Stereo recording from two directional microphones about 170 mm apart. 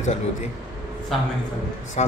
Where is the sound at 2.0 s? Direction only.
40° left (ahead or behind).